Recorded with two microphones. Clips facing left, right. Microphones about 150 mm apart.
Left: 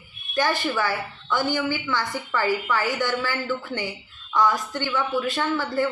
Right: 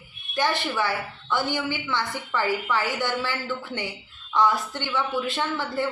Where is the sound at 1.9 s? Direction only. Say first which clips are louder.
Left 2 dB; 25° right (ahead or behind).